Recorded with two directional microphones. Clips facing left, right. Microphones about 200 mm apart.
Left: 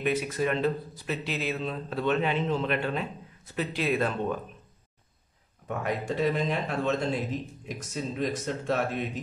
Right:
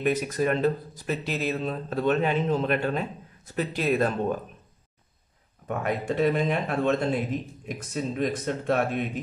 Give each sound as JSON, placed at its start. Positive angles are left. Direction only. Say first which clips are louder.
{"t": 0.0, "sound": "speech", "louder": "right 3 dB", "side_deg": -45}
{"t": 5.7, "sound": "speech", "louder": "right 3 dB", "side_deg": -55}